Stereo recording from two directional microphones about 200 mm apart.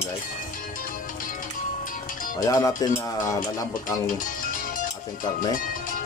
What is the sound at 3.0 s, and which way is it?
Speech, 15° left (ahead or behind).